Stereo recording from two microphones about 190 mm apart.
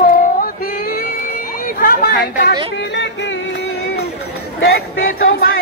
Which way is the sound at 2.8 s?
65° left (ahead or behind).